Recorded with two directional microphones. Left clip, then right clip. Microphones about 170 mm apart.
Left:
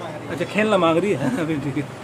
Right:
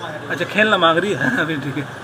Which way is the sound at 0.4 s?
10° left (ahead or behind).